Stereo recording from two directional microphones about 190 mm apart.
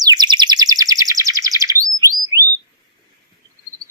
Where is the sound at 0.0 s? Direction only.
20° right (ahead or behind).